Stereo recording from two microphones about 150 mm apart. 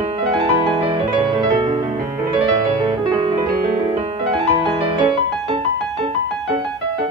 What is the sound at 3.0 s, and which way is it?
Music, 35° right (ahead or behind).